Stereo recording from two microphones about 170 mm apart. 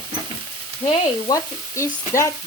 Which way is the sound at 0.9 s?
20° left (ahead or behind).